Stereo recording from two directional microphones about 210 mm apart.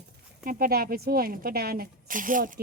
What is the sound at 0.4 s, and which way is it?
Speech, 45° right (ahead or behind).